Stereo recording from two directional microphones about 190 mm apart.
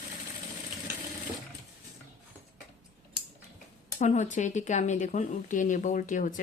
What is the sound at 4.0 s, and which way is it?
Speech, 40° left (ahead or behind).